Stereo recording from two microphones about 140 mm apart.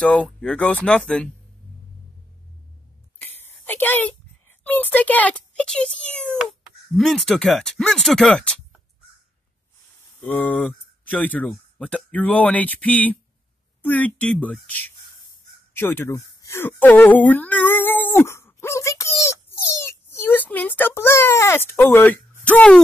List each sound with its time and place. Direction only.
0.0 s speech: 5° left (ahead or behind)
3.2 s speech: 15° left (ahead or behind)
10.2 s speech: 10° left (ahead or behind)